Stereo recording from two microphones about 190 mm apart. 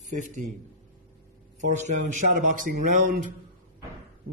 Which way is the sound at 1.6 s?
40° right (ahead or behind).